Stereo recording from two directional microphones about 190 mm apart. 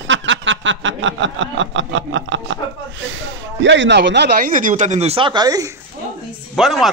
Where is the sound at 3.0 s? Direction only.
90° right; by 4.5 s 60° right (ahead or behind).